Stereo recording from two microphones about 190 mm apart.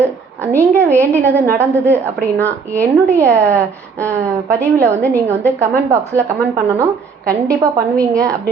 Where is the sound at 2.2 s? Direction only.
10° left (ahead or behind).